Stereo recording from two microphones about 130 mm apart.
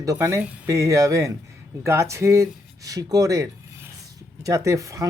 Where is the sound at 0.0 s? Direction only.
25° right (ahead or behind).